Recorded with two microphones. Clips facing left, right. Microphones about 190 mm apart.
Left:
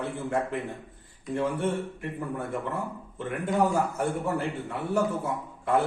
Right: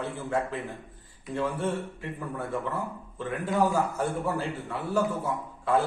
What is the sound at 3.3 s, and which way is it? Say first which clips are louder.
A man's voice: even; 20° left (ahead or behind).